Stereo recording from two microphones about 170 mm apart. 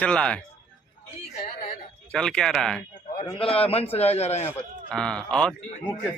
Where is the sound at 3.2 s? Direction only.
35° left (ahead or behind).